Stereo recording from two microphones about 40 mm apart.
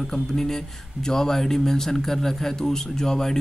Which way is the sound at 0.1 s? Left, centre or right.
Centre.